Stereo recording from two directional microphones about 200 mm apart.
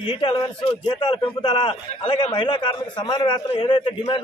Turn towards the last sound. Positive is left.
turn(degrees=25)  # may be behind; listen again after turning